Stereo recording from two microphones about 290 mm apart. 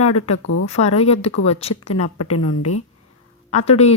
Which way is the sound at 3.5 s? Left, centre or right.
Left.